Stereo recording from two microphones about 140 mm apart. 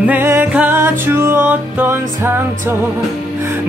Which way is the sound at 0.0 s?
15° right (ahead or behind).